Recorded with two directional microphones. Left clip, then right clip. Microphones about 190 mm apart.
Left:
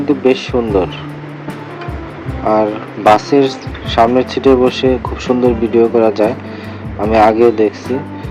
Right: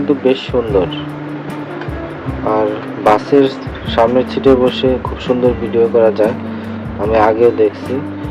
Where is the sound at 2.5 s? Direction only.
35° left (ahead or behind).